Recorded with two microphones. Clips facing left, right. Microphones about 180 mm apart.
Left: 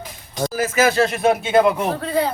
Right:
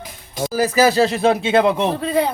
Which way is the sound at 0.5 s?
35° right (ahead or behind).